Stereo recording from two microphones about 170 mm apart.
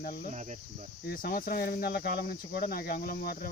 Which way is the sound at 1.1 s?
60° left (ahead or behind).